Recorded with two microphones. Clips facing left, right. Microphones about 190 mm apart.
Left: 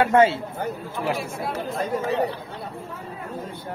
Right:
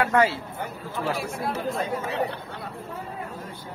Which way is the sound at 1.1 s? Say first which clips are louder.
Left 1 dB; centre (ahead or behind).